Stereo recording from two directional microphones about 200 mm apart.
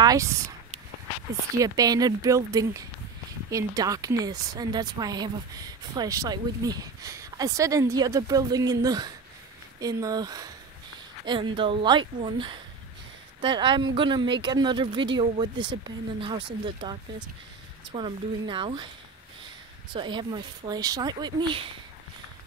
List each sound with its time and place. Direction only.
0.0 s speech: 15° right (ahead or behind)
1.6 s speech: 20° right (ahead or behind)
19.9 s speech: 25° right (ahead or behind)